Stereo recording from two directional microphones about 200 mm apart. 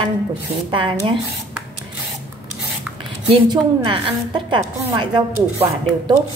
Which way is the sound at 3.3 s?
25° right (ahead or behind).